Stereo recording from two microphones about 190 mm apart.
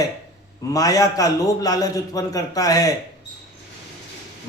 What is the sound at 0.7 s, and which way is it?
A man's voice, 20° left (ahead or behind).